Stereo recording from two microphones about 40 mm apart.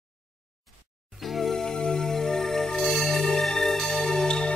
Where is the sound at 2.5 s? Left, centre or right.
Centre.